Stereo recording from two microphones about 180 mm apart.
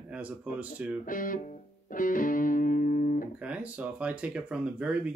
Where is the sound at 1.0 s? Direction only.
50° left (ahead or behind).